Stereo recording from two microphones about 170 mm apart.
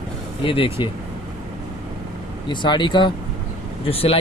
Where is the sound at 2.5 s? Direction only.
25° left (ahead or behind).